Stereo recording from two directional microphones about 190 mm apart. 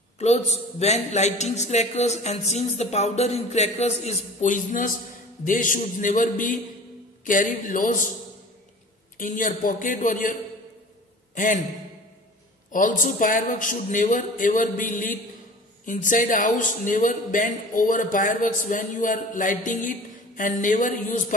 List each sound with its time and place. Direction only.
0.2 s a man's voice: 35° left (ahead or behind)
9.2 s a man's voice: 45° left (ahead or behind)
11.3 s a man's voice: 45° left (ahead or behind)
13.0 s a man's voice: 45° left (ahead or behind)